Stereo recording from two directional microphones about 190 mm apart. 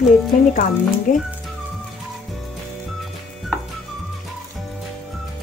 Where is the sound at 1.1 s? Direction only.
45° left (ahead or behind).